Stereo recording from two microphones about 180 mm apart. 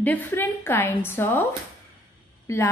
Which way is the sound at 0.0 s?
10° left (ahead or behind).